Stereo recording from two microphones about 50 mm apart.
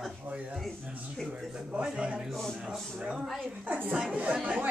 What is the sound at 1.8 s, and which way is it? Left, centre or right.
Speech, right.